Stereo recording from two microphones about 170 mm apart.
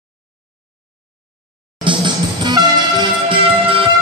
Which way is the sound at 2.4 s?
25° right (ahead or behind).